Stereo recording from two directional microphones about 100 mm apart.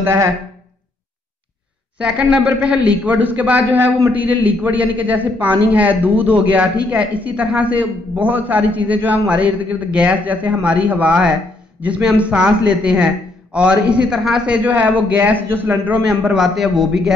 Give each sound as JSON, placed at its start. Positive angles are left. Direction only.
{"t": 0.0, "sound": "speech", "side_deg": -25}
{"t": 2.0, "sound": "a man's voice", "side_deg": -10}